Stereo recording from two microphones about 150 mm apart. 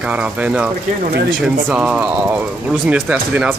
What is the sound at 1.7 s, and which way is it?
Speech, 5° right (ahead or behind).